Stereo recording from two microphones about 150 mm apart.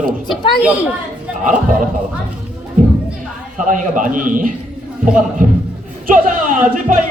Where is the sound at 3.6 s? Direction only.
60° right (ahead or behind).